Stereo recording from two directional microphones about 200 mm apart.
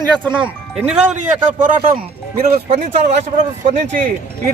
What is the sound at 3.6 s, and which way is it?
Speech, 35° right (ahead or behind).